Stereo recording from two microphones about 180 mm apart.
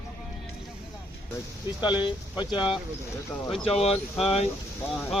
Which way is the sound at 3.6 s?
35° left (ahead or behind).